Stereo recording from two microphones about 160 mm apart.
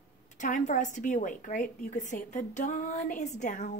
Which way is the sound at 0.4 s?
50° left (ahead or behind).